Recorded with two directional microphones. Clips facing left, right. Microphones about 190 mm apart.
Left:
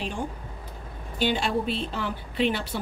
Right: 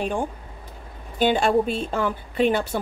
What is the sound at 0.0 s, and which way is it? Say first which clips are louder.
A woman's voice: right 6 dB; 50° right (ahead or behind).